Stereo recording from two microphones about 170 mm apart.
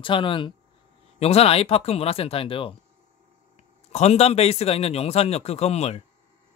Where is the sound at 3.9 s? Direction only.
40° left (ahead or behind).